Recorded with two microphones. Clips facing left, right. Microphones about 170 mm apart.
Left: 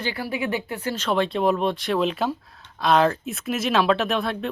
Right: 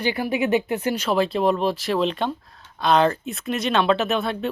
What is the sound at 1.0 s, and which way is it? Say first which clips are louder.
Speech: even; 5° right (ahead or behind).